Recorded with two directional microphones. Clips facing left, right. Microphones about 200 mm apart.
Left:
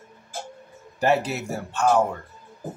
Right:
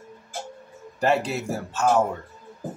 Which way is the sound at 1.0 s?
Centre (ahead or behind).